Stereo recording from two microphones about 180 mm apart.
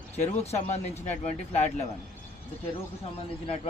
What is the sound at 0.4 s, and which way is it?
Speech, 35° left (ahead or behind).